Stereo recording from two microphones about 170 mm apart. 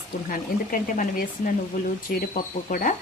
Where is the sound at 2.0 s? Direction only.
55° left (ahead or behind).